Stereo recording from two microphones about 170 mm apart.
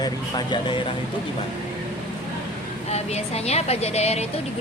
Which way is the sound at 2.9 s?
40° left (ahead or behind).